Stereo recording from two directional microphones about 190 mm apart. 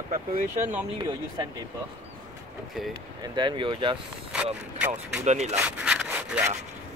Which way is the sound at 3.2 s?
25° right (ahead or behind).